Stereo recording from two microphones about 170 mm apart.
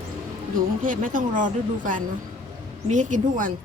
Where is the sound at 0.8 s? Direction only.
55° right (ahead or behind).